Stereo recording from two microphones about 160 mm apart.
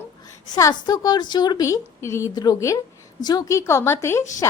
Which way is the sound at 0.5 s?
25° left (ahead or behind).